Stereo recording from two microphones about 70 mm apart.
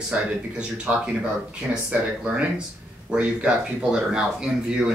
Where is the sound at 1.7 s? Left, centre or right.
Right.